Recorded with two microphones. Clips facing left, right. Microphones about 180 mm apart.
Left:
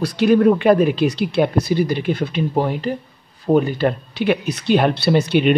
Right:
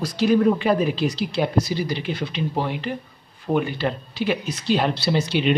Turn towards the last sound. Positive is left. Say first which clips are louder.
# left 6 dB
turn(degrees=60)  # may be behind; listen again after turning